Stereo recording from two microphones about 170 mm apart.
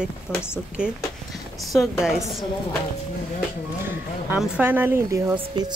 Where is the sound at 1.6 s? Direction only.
Centre (ahead or behind).